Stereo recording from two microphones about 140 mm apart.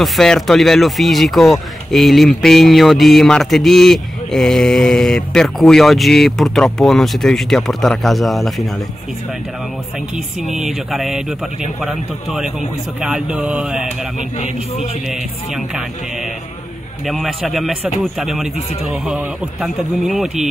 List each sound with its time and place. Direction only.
0.0 s speech: centre (ahead or behind)
10.4 s speech: centre (ahead or behind)
13.8 s speech: 55° left (ahead or behind)
15.0 s speech: 5° right (ahead or behind)